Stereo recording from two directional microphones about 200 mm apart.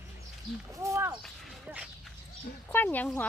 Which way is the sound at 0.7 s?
15° right (ahead or behind).